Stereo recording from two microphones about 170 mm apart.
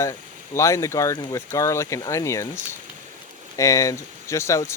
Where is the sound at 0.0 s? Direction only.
15° left (ahead or behind).